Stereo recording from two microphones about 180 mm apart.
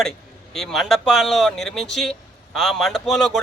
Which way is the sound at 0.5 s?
Centre (ahead or behind).